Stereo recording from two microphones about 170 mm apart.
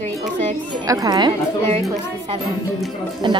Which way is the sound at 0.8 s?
20° right (ahead or behind).